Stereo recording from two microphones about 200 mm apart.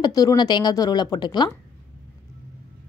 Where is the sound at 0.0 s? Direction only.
20° left (ahead or behind).